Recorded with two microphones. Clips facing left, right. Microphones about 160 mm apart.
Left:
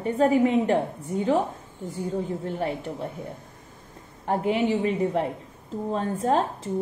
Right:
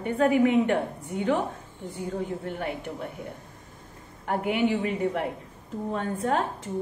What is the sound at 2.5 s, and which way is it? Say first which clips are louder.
Speech: left 3 dB; 35° left (ahead or behind).